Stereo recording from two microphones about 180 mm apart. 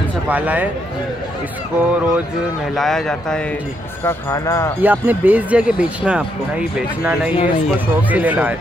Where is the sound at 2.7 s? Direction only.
Centre (ahead or behind).